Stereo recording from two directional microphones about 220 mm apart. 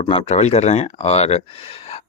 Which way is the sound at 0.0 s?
30° left (ahead or behind).